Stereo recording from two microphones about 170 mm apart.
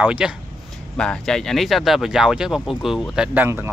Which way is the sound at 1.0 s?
5° left (ahead or behind).